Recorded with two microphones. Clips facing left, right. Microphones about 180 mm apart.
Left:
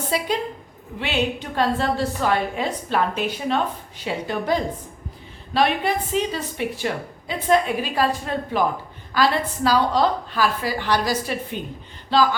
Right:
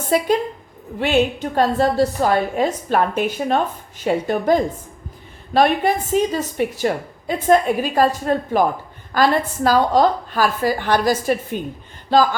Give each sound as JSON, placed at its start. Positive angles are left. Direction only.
{"t": 0.1, "sound": "a woman's voice", "side_deg": -50}